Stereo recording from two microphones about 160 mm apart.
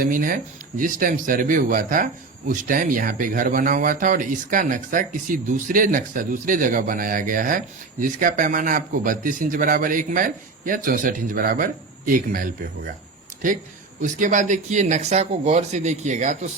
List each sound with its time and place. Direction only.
0.0 s speech: 60° right (ahead or behind)
14.0 s speech: 55° right (ahead or behind)